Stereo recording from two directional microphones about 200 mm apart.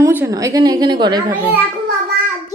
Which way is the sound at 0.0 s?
10° right (ahead or behind).